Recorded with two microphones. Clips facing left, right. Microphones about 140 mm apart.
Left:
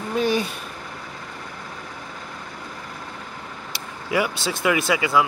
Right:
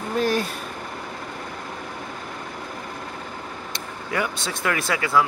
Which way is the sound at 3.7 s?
10° left (ahead or behind).